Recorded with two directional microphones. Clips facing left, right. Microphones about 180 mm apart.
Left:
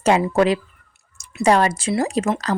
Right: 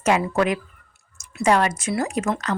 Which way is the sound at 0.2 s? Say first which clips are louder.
Left 4 dB; 30° left (ahead or behind).